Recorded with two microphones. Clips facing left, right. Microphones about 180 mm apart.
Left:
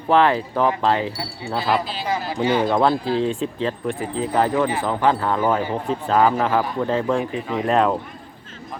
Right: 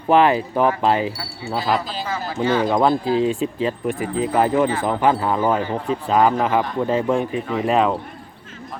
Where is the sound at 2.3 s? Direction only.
15° left (ahead or behind).